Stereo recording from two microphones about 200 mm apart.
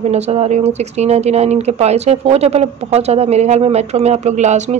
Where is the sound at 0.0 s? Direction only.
30° right (ahead or behind).